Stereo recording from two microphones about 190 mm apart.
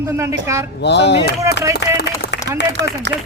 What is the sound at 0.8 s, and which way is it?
Speech, 65° left (ahead or behind).